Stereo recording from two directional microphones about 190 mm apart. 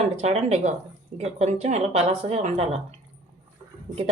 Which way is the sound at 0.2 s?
35° right (ahead or behind).